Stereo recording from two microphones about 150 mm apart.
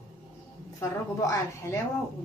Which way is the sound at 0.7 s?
20° left (ahead or behind).